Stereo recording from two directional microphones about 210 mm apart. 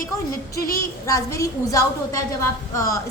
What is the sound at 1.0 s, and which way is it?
A woman's voice, 15° left (ahead or behind).